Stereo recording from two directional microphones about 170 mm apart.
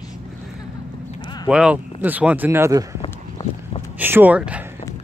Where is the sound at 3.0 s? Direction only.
30° left (ahead or behind).